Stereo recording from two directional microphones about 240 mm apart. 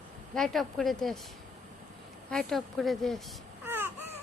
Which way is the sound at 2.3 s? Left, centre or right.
Centre.